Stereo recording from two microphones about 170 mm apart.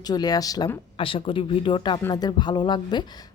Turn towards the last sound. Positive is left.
turn(degrees=25)  # may be behind; listen again after turning